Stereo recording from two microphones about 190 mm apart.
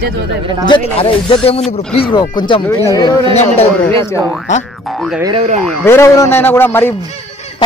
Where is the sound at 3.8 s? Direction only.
15° left (ahead or behind).